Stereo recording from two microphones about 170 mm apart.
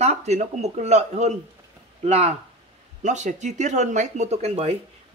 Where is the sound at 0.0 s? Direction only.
40° right (ahead or behind).